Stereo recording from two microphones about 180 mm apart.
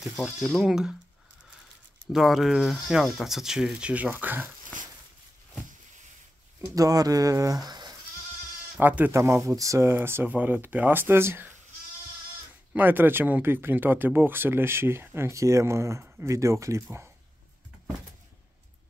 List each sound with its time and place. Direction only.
0.0 s speech: centre (ahead or behind)
2.1 s speech: centre (ahead or behind)
6.7 s speech: 20° right (ahead or behind)
8.7 s speech: 10° right (ahead or behind)
12.7 s speech: 10° right (ahead or behind)